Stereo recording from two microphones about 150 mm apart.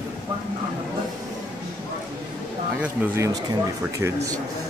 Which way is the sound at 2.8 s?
15° right (ahead or behind).